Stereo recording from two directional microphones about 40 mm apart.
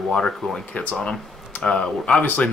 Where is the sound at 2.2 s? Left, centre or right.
Left.